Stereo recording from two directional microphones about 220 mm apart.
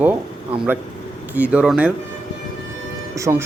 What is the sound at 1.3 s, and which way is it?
Speech, 5° right (ahead or behind).